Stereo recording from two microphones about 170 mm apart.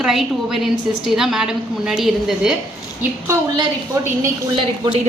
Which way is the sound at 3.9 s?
15° right (ahead or behind).